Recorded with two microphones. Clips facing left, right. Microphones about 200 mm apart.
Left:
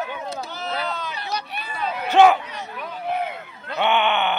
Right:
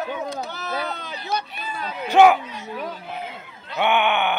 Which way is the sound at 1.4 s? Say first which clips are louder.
Even; 65° left (ahead or behind).